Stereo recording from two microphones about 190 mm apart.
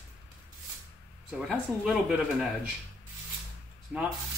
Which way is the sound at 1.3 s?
Centre (ahead or behind).